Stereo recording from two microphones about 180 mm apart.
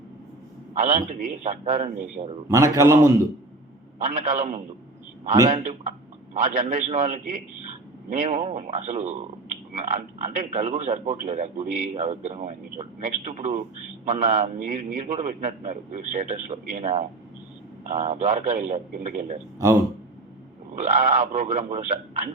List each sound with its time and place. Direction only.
0.7 s a man's voice: 40° right (ahead or behind)
2.5 s a man's voice: 15° right (ahead or behind)
3.9 s a man's voice: 45° right (ahead or behind)
20.7 s speech: 45° right (ahead or behind)